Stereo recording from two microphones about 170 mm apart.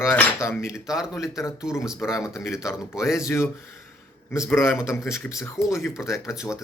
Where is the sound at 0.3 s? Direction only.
15° left (ahead or behind).